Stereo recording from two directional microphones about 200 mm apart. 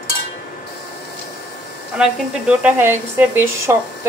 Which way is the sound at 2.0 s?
5° right (ahead or behind).